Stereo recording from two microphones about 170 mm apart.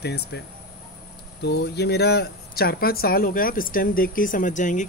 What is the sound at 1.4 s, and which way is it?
Speech, 75° left (ahead or behind).